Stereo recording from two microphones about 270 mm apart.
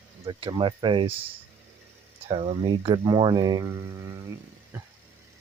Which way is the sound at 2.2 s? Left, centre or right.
Right.